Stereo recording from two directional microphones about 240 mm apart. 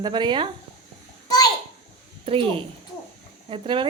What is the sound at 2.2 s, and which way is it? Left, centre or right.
A woman's voice, right.